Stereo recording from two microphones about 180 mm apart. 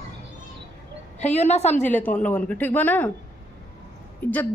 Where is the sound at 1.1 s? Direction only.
40° left (ahead or behind).